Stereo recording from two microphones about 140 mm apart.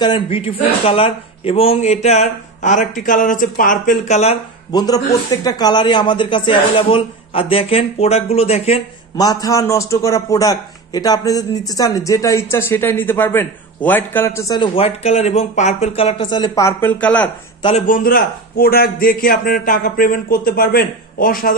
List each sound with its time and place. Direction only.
0.0 s a man's voice: 35° left (ahead or behind); by 4.2 s 70° left (ahead or behind)
4.7 s speech: 25° left (ahead or behind); by 8.8 s 50° left (ahead or behind)
9.1 s a man's voice: 25° left (ahead or behind)
14.6 s a man's voice: 45° left (ahead or behind)
16.6 s a man's voice: 15° left (ahead or behind)
17.7 s a man's voice: 75° left (ahead or behind)